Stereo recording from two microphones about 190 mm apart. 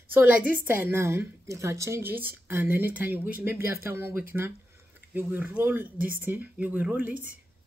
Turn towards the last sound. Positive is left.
turn(degrees=-10)  # may be behind; listen again after turning